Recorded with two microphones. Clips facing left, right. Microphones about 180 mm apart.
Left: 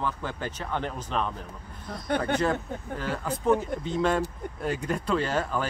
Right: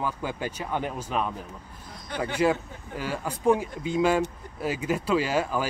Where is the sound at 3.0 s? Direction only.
10° right (ahead or behind).